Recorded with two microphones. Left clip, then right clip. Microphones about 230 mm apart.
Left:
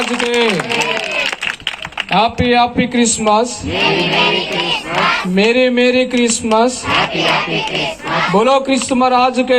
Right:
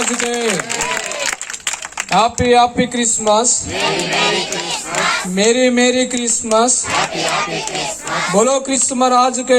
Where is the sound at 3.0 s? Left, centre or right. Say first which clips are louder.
Left 2 dB; right.